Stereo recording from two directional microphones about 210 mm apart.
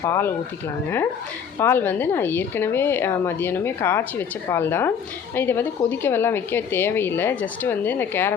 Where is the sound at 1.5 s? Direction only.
10° left (ahead or behind).